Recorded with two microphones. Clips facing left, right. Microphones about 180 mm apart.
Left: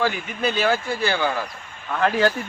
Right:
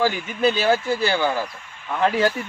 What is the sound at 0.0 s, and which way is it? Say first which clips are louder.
Speech: right 3 dB; 30° right (ahead or behind).